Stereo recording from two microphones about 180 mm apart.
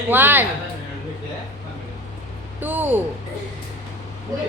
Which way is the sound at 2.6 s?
10° right (ahead or behind).